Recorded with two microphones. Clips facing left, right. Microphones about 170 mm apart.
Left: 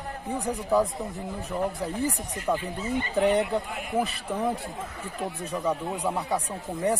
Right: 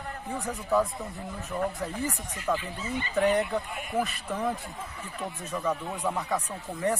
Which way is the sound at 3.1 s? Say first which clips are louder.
Left 1 dB; 30° left (ahead or behind).